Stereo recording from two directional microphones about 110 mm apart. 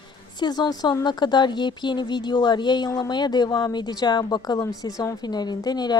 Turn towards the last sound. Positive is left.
turn(degrees=40)  # may be behind; listen again after turning